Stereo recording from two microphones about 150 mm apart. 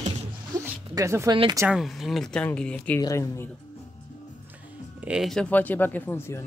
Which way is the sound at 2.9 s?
20° left (ahead or behind).